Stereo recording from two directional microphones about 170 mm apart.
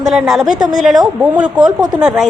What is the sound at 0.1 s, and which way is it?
A woman's voice, centre (ahead or behind).